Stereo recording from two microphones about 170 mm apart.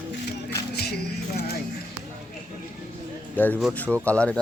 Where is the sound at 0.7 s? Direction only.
70° left (ahead or behind).